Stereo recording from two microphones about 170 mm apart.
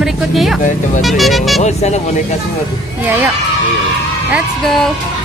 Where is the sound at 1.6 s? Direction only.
40° left (ahead or behind).